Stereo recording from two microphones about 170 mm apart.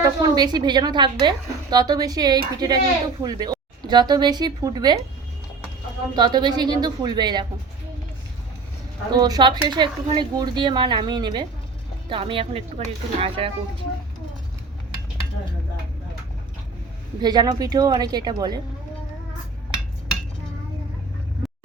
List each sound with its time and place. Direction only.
0.0 s a woman's voice: 25° right (ahead or behind)
6.1 s a woman's voice: 25° right (ahead or behind)
9.1 s a woman's voice: 25° right (ahead or behind)
17.2 s a woman's voice: 25° right (ahead or behind)